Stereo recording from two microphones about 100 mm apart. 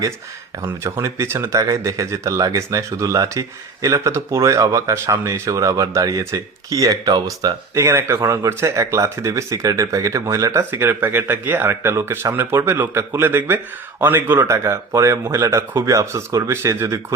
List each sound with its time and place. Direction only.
0.9 s speech: 30° right (ahead or behind)